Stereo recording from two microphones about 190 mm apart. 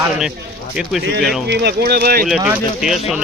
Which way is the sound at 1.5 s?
60° right (ahead or behind).